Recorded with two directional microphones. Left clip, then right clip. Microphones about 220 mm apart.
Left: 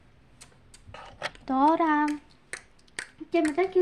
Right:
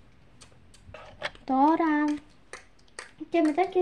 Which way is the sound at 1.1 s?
10° left (ahead or behind).